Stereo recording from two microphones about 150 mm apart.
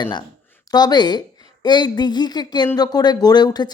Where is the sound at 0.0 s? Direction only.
30° left (ahead or behind).